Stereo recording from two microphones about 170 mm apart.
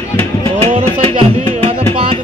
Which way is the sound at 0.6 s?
35° right (ahead or behind).